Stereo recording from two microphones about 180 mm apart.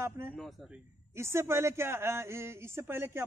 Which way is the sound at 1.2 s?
15° right (ahead or behind).